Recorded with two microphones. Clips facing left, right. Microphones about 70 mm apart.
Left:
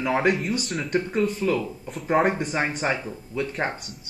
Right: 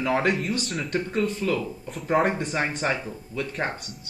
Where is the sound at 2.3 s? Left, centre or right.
Centre.